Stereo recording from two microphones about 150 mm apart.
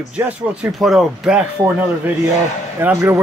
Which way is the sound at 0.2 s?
5° right (ahead or behind).